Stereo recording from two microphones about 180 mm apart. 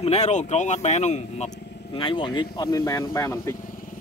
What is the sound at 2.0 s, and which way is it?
Speech, 30° left (ahead or behind).